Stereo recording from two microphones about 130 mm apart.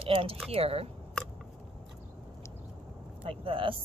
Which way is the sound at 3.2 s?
45° right (ahead or behind).